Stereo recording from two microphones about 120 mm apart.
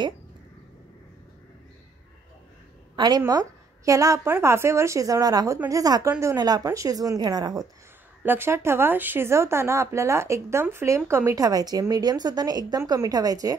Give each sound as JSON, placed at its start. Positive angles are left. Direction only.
{"t": 3.0, "sound": "speech", "side_deg": -35}
{"t": 8.2, "sound": "speech", "side_deg": -20}